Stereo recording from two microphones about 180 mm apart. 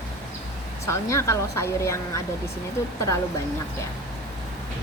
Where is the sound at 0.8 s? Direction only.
15° left (ahead or behind).